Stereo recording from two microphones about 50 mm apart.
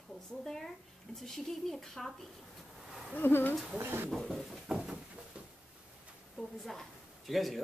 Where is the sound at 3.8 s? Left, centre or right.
Right.